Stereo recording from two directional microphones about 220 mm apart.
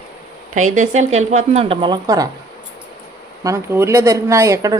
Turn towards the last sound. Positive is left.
turn(degrees=-15)  # may be behind; listen again after turning